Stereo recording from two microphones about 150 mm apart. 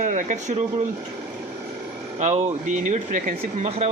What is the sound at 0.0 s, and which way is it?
Speech, 55° right (ahead or behind).